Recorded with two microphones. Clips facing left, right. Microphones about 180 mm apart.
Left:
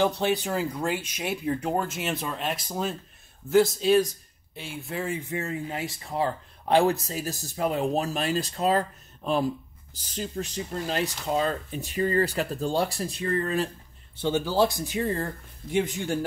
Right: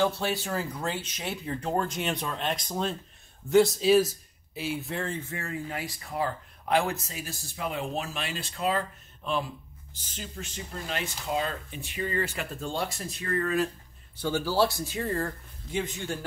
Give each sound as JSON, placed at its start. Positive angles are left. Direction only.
{"t": 0.0, "sound": "a man's voice", "side_deg": 20}